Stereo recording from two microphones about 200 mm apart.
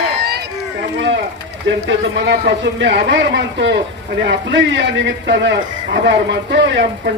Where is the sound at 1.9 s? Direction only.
65° right (ahead or behind).